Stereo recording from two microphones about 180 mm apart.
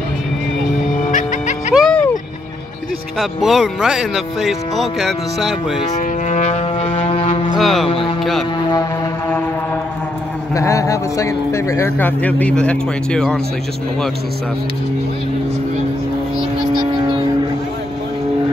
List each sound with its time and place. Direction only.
1.1 s music: 40° left (ahead or behind)
1.7 s music: centre (ahead or behind)
3.2 s speech: centre (ahead or behind)
5.9 s vehicle: 40° left (ahead or behind)
7.5 s speech: centre (ahead or behind)
8.2 s music: centre (ahead or behind)
10.5 s speech: 15° left (ahead or behind)